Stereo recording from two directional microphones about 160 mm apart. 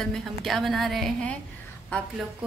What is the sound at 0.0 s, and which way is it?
A woman's voice, 5° left (ahead or behind).